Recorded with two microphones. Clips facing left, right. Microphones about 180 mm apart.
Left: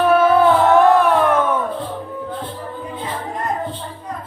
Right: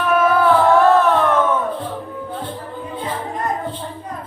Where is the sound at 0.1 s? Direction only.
30° left (ahead or behind); by 1.4 s 10° left (ahead or behind).